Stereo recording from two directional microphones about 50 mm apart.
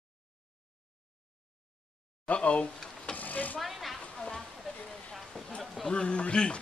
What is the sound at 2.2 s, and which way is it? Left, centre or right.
Speech, left.